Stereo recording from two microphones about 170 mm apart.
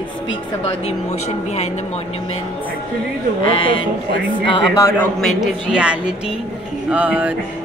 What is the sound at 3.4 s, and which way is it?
Speech, 30° left (ahead or behind).